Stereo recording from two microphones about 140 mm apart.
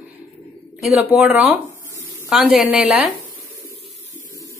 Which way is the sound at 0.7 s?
5° right (ahead or behind).